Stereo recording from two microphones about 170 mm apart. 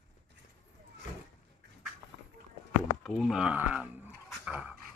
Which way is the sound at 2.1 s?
90° right.